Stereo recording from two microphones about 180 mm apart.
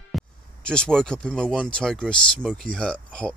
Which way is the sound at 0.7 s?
5° left (ahead or behind).